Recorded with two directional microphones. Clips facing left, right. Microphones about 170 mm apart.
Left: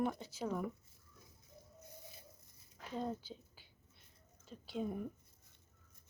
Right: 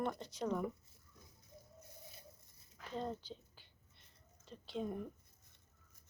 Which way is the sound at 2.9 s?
5° left (ahead or behind).